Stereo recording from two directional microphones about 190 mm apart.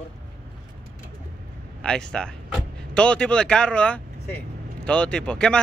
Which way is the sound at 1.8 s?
5° left (ahead or behind).